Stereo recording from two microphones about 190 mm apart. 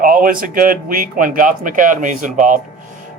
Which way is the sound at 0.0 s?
50° right (ahead or behind).